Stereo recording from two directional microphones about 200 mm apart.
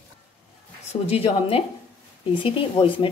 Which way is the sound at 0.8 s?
30° left (ahead or behind).